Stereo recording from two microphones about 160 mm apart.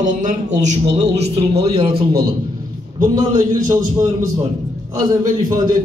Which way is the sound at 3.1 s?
20° right (ahead or behind).